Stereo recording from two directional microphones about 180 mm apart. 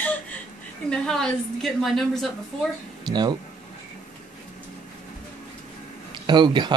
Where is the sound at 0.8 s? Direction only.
5° left (ahead or behind).